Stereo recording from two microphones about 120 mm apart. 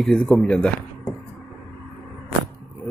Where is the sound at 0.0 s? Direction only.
5° left (ahead or behind).